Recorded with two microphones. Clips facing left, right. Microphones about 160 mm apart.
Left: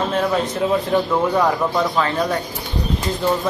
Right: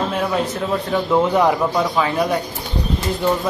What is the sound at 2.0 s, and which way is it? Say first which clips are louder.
Speech: right 1 dB; 10° right (ahead or behind).